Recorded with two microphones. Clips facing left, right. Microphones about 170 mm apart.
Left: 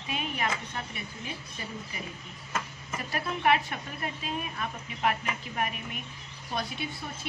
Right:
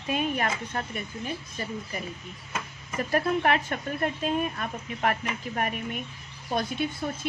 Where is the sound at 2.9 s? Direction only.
45° right (ahead or behind).